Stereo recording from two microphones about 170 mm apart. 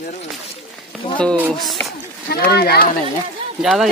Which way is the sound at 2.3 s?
65° left (ahead or behind).